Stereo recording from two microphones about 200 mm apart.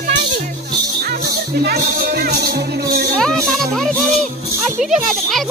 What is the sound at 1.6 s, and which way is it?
Music, 50° right (ahead or behind).